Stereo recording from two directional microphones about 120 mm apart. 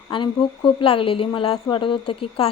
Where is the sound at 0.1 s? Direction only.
50° left (ahead or behind).